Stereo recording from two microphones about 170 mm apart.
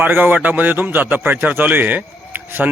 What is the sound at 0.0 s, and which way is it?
A man's voice, 10° right (ahead or behind).